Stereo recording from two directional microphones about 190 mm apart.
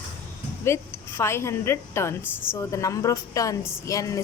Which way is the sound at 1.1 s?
15° left (ahead or behind).